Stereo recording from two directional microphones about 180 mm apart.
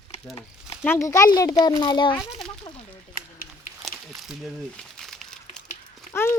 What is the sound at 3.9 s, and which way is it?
Crumpling, centre (ahead or behind).